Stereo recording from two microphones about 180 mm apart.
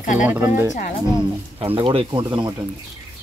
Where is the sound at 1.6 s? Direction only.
30° right (ahead or behind).